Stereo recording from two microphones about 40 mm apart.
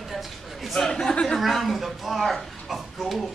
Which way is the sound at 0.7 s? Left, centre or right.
Centre.